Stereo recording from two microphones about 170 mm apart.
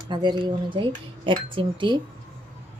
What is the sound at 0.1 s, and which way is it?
Speech, 25° right (ahead or behind).